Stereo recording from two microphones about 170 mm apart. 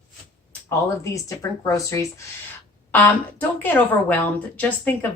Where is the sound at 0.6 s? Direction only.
20° left (ahead or behind).